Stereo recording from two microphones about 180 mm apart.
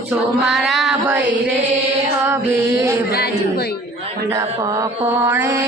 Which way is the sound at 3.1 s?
60° left (ahead or behind).